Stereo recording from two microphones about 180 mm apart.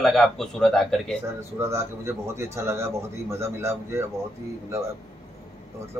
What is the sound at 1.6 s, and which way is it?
A man's voice, 15° right (ahead or behind).